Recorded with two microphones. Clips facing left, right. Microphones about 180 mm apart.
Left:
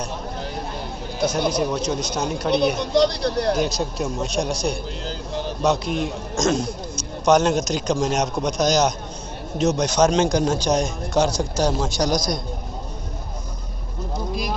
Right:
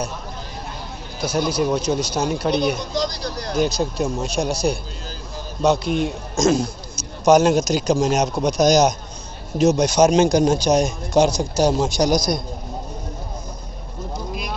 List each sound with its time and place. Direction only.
1.8 s speech: 5° right (ahead or behind)
2.8 s speech: 65° left (ahead or behind)
3.5 s speech: centre (ahead or behind)
5.0 s vehicle: 70° left (ahead or behind)
5.6 s speech: centre (ahead or behind)